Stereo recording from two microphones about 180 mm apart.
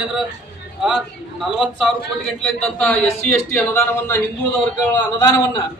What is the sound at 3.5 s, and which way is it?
Speech, 10° left (ahead or behind).